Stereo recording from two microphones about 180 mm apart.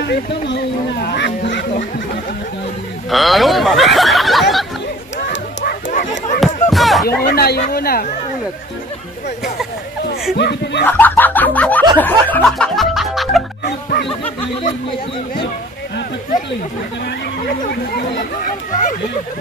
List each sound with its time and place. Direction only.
0.0 s speech: 70° left (ahead or behind)
3.1 s speech: centre (ahead or behind)
5.6 s dog: 45° left (ahead or behind)
6.4 s chop: centre (ahead or behind)
7.2 s speech: 60° left (ahead or behind)
10.3 s speech: 65° left (ahead or behind)
10.9 s music: 10° left (ahead or behind)
17.5 s speech: 60° left (ahead or behind)